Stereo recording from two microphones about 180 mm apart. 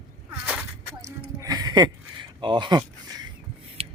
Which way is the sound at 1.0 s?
20° right (ahead or behind).